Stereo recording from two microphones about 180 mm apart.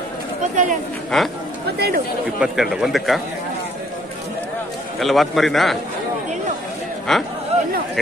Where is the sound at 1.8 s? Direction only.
60° right (ahead or behind).